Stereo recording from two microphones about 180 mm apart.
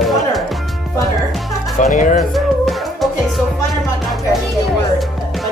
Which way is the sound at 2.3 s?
Centre (ahead or behind).